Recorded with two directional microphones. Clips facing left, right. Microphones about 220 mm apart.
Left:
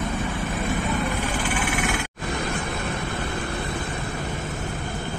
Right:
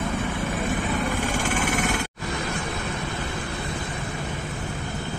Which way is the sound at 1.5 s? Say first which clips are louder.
Right 1 dB; 45° right (ahead or behind).